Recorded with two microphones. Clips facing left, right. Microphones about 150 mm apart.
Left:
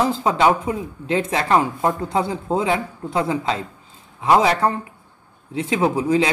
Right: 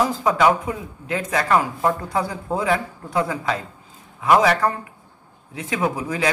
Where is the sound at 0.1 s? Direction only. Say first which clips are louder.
Left 1 dB; 25° left (ahead or behind).